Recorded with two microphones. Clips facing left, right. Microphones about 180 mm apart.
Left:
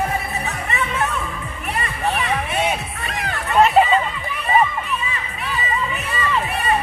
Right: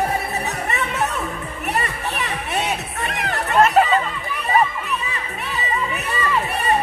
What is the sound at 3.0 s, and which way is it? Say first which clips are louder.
Music: right 2 dB; 55° right (ahead or behind).